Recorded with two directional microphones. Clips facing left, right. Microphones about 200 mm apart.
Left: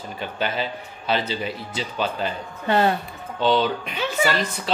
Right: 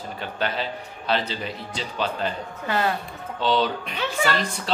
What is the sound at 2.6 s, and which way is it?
Speech, 25° left (ahead or behind).